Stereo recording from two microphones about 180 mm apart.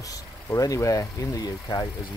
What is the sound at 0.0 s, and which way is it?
Speech, 20° left (ahead or behind).